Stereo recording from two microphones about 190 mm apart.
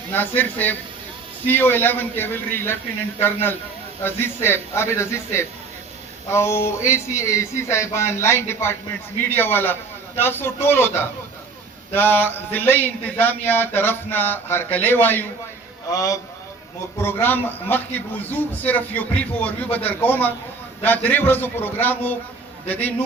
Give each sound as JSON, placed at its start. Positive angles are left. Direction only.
{"t": 0.1, "sound": "speech", "side_deg": 10}
{"t": 4.0, "sound": "speech", "side_deg": 10}